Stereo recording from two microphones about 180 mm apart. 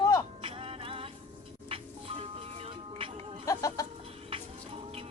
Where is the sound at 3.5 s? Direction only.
20° left (ahead or behind).